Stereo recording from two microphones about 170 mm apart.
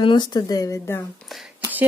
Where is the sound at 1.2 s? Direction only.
Centre (ahead or behind).